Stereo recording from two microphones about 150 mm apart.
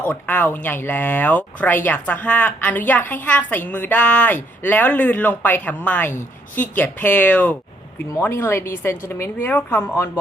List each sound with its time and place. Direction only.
0.0 s speech: 10° left (ahead or behind)